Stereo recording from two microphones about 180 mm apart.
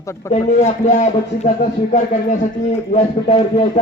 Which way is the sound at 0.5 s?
40° left (ahead or behind).